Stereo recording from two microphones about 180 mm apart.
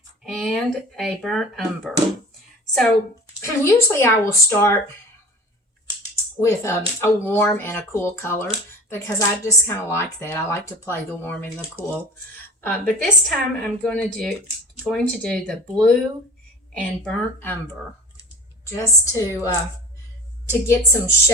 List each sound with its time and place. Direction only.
0.3 s a woman's voice: centre (ahead or behind)
3.6 s speech: 15° left (ahead or behind)
6.4 s a woman's voice: 15° left (ahead or behind)
18.7 s speech: 15° left (ahead or behind)